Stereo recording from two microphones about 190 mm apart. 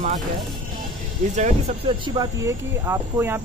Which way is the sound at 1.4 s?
25° right (ahead or behind).